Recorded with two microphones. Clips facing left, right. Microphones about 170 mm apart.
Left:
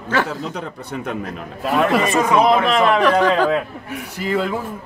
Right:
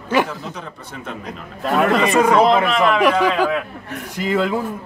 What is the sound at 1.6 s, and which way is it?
Speech, 5° left (ahead or behind).